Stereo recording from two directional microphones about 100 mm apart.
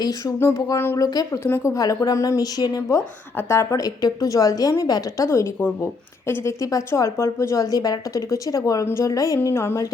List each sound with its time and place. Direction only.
0.0 s speech: 40° left (ahead or behind)
2.9 s speech: 25° left (ahead or behind)